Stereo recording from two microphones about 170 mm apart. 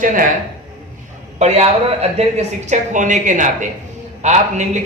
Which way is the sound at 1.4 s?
40° right (ahead or behind).